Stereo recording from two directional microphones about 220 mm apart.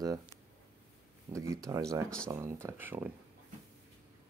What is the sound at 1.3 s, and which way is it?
Speech, 15° right (ahead or behind).